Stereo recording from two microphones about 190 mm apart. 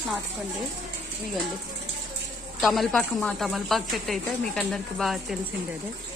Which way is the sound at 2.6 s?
Centre (ahead or behind).